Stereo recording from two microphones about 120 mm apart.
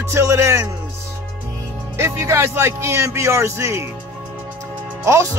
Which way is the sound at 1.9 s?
20° right (ahead or behind).